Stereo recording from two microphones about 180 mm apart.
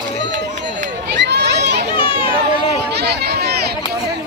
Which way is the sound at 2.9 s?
65° right (ahead or behind).